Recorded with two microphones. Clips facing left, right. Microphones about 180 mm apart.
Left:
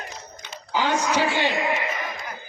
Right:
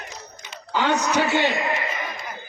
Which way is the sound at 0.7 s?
70° right (ahead or behind).